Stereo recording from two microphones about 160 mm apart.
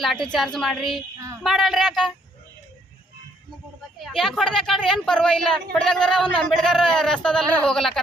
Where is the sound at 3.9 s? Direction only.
Centre (ahead or behind).